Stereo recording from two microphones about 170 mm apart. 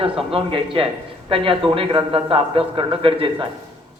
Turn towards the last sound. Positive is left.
turn(degrees=-30)  # may be behind; listen again after turning